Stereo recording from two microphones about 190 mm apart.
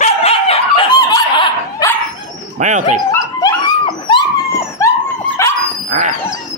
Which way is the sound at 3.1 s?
20° left (ahead or behind).